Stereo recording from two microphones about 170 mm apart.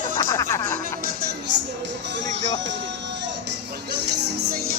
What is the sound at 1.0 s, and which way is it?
Speech, 65° right (ahead or behind).